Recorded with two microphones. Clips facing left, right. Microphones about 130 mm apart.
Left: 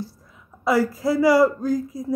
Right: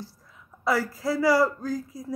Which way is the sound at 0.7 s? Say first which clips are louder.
Left 5 dB; 15° left (ahead or behind).